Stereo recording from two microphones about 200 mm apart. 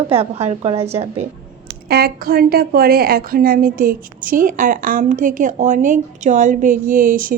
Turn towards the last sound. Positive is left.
turn(degrees=-45)  # may be behind; listen again after turning